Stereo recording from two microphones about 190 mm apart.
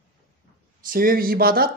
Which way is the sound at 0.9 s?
50° right (ahead or behind).